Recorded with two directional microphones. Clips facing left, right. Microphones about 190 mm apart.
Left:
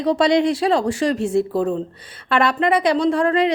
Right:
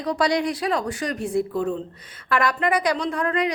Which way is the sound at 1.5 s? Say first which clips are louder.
Left 4 dB; 40° left (ahead or behind).